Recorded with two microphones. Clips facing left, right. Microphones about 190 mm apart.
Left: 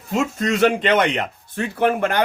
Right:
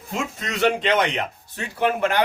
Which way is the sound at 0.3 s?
50° left (ahead or behind).